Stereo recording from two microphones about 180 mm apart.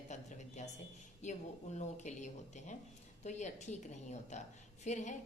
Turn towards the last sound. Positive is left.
turn(degrees=40)  # may be behind; listen again after turning